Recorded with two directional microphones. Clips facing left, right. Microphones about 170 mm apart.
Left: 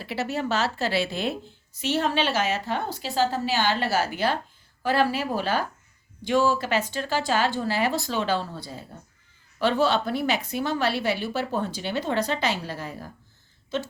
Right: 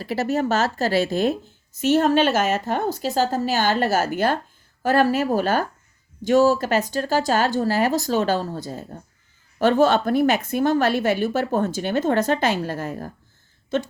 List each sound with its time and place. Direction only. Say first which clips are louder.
0.0 s a woman's voice: right 6 dB; 40° right (ahead or behind)